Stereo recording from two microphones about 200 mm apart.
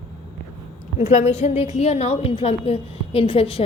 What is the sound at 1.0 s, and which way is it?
A woman's voice, 35° left (ahead or behind).